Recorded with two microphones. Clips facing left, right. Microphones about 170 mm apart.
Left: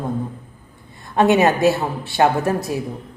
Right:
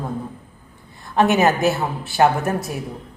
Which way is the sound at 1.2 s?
20° left (ahead or behind).